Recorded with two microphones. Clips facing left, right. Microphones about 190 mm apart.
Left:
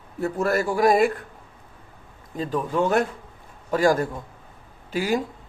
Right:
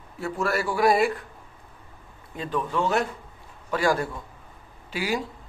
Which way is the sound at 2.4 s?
40° left (ahead or behind).